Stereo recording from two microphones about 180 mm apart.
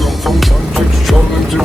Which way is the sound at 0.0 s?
Centre (ahead or behind).